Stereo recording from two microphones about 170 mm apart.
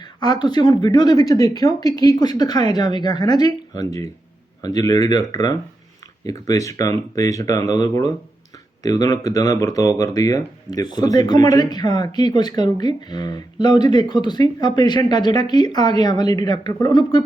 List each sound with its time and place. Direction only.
0.0 s speech: 25° left (ahead or behind)